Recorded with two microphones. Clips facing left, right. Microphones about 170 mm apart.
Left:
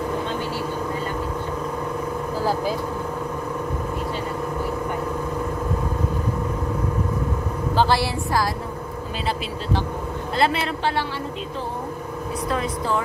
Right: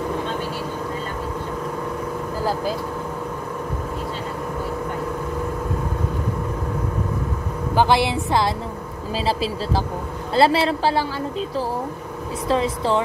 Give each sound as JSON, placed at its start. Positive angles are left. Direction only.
{"t": 7.7, "sound": "a woman's voice", "side_deg": -15}
{"t": 9.2, "sound": "speech", "side_deg": -35}
{"t": 12.4, "sound": "a woman's voice", "side_deg": -30}